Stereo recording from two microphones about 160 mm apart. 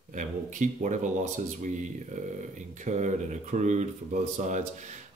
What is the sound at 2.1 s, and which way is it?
Speech, 50° right (ahead or behind).